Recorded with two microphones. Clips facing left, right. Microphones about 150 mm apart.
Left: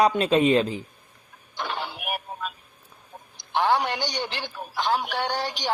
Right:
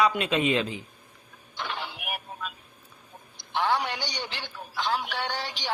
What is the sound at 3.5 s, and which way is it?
A man's voice, 45° left (ahead or behind).